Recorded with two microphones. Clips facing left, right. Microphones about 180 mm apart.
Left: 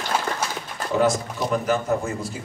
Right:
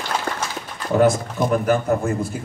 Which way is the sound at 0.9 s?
50° right (ahead or behind).